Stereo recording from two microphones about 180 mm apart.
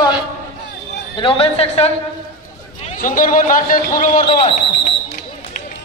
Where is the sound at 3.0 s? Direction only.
50° left (ahead or behind).